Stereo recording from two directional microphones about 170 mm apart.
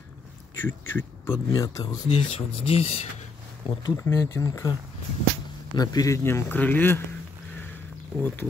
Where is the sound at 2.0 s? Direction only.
35° left (ahead or behind).